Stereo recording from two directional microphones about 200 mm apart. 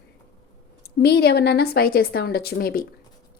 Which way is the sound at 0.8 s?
55° left (ahead or behind).